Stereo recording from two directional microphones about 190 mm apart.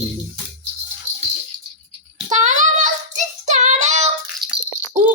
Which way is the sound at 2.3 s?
40° right (ahead or behind).